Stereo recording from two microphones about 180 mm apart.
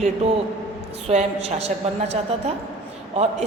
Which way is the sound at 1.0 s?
35° right (ahead or behind).